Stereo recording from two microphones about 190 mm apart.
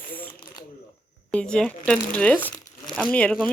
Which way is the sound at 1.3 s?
5° left (ahead or behind).